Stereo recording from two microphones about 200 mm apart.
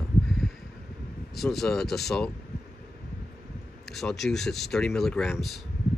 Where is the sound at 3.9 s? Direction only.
Centre (ahead or behind).